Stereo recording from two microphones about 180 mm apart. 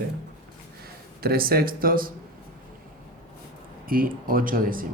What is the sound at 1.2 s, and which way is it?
Speech, 55° right (ahead or behind).